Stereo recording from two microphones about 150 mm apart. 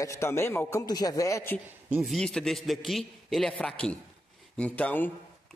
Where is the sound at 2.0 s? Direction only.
5° left (ahead or behind).